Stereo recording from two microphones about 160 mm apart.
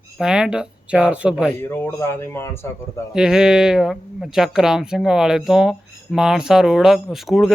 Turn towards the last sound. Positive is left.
turn(degrees=0)  # may be behind; listen again after turning